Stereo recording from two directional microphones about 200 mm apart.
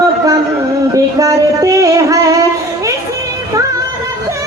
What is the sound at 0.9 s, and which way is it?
Music, 15° right (ahead or behind).